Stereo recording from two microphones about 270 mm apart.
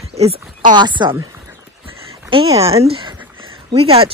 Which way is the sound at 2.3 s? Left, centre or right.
Right.